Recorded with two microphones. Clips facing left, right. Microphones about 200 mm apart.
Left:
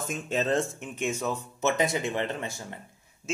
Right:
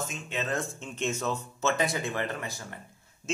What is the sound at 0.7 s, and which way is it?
Speech, 15° left (ahead or behind).